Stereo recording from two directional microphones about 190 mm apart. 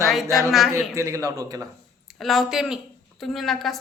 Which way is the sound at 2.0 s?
Centre (ahead or behind).